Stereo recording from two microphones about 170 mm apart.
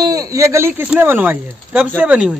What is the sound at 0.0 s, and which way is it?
Speech, 20° right (ahead or behind).